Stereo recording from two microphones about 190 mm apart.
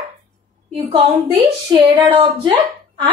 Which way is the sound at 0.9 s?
30° right (ahead or behind).